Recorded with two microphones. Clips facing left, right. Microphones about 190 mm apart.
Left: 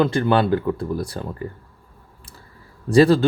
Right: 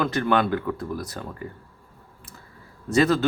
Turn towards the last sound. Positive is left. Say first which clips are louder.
# left 6 dB
turn(degrees=30)  # may be behind; listen again after turning